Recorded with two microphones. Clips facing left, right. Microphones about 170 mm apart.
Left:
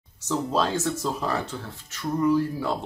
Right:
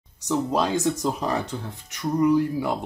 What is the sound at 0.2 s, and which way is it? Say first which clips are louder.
Speech: right 2 dB; 15° right (ahead or behind).